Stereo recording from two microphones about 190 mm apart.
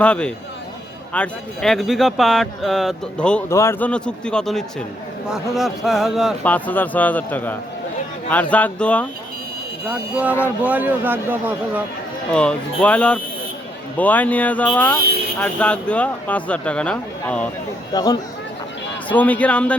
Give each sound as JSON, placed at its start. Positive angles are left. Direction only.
{"t": 0.0, "sound": "speech", "side_deg": 5}
{"t": 9.8, "sound": "a man's voice", "side_deg": -10}
{"t": 12.3, "sound": "speech", "side_deg": 5}
{"t": 17.9, "sound": "speech", "side_deg": 20}
{"t": 19.1, "sound": "speech", "side_deg": 10}